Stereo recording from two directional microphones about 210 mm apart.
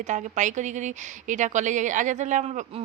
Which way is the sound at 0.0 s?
35° right (ahead or behind).